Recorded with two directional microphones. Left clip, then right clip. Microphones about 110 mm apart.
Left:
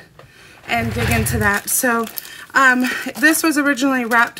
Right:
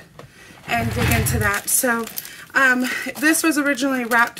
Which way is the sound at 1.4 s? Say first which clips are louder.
Left 3 dB; 35° left (ahead or behind).